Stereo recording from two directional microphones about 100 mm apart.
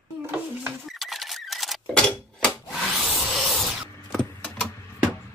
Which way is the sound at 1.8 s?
15° left (ahead or behind).